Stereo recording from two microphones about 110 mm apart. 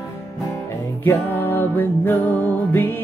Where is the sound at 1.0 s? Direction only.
20° left (ahead or behind).